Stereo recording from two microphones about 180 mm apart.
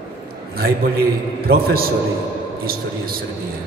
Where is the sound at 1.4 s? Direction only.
60° right (ahead or behind).